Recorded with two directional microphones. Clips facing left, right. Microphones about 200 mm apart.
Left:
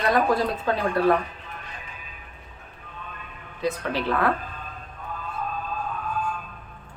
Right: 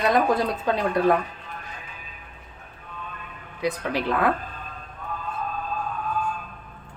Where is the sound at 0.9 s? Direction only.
15° right (ahead or behind).